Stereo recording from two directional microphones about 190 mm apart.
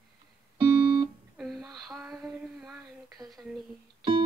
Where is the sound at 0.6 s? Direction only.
20° right (ahead or behind).